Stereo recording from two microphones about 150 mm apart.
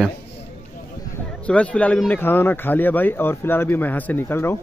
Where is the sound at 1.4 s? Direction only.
10° left (ahead or behind).